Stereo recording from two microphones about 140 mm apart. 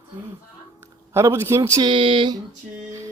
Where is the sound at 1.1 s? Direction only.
20° right (ahead or behind).